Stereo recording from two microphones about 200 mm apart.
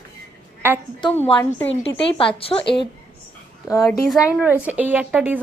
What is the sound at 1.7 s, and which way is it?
Speech, 30° left (ahead or behind).